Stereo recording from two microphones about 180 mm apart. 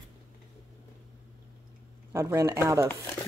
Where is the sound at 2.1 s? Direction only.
15° right (ahead or behind).